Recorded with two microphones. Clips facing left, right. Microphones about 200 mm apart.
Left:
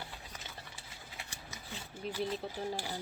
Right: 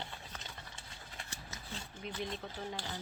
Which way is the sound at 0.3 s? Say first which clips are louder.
Even; 5° left (ahead or behind).